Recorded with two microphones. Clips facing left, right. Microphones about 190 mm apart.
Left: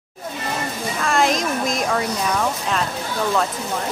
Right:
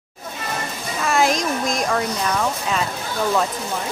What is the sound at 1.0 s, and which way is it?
Speech, centre (ahead or behind).